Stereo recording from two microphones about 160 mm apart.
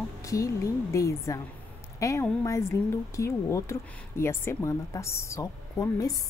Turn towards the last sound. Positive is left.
turn(degrees=20)  # may be behind; listen again after turning